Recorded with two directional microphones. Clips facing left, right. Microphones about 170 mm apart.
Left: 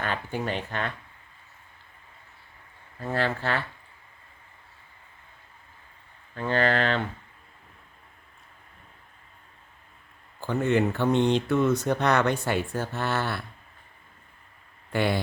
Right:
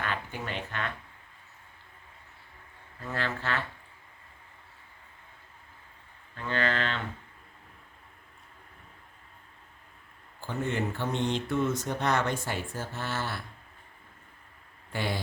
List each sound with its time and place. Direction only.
0.0 s speech: 35° left (ahead or behind)
3.0 s speech: 30° left (ahead or behind)
6.3 s speech: 40° left (ahead or behind)
10.4 s speech: 70° left (ahead or behind)
14.9 s speech: 60° left (ahead or behind)